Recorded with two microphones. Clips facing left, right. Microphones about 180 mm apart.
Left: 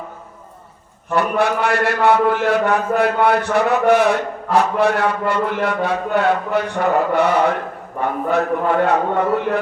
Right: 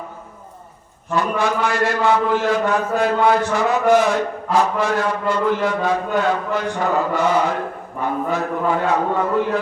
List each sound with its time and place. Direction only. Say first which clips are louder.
1.1 s a man's voice: left 2 dB; 60° left (ahead or behind)